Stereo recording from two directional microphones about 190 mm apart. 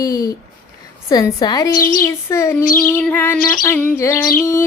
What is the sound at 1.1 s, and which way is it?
Speech, 20° left (ahead or behind).